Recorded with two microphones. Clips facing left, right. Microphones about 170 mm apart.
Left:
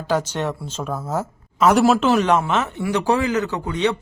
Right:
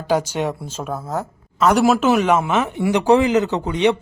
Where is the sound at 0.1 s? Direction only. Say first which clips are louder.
Right 2 dB; 10° right (ahead or behind).